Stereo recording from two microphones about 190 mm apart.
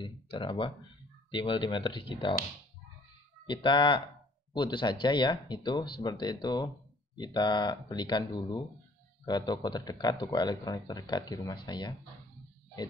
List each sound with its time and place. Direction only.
0.0 s speech: 25° left (ahead or behind)
3.4 s speech: 25° left (ahead or behind)